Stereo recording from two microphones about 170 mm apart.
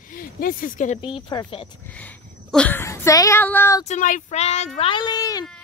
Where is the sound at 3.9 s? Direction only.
45° left (ahead or behind).